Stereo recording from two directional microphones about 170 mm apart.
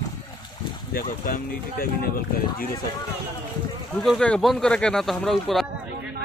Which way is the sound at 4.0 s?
5° left (ahead or behind).